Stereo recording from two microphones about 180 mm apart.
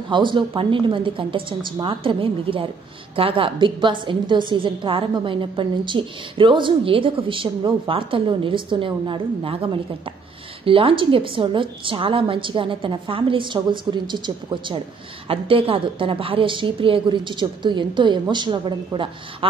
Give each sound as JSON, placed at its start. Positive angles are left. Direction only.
{"t": 0.1, "sound": "a woman's voice", "side_deg": -25}